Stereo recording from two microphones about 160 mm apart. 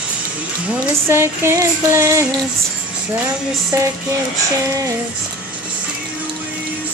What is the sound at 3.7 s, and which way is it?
Female singing, 20° right (ahead or behind).